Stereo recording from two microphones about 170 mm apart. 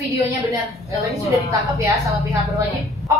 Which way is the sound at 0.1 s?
20° right (ahead or behind).